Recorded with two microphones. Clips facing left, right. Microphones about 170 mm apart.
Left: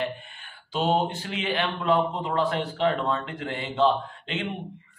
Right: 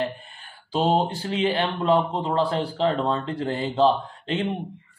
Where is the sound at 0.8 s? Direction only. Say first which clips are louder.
Right 2 dB; 35° right (ahead or behind).